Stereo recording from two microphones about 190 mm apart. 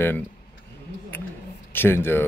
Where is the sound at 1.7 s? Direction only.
10° left (ahead or behind).